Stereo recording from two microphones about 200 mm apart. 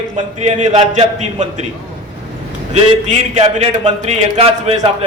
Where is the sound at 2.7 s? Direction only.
35° right (ahead or behind).